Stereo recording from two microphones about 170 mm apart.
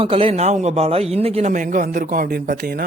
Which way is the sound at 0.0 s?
35° right (ahead or behind).